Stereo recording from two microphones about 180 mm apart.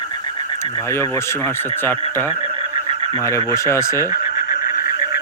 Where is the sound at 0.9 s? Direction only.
15° left (ahead or behind).